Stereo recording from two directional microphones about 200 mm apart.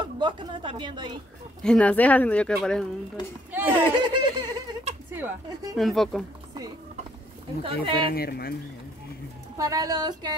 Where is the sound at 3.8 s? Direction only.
25° right (ahead or behind).